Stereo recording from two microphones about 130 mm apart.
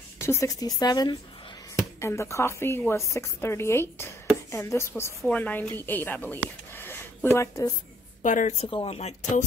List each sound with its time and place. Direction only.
0.2 s a woman's voice: 20° left (ahead or behind)
8.2 s a woman's voice: 75° left (ahead or behind)
8.6 s speech: 45° left (ahead or behind)